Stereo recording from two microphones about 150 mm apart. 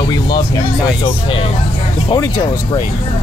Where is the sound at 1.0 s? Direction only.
40° left (ahead or behind).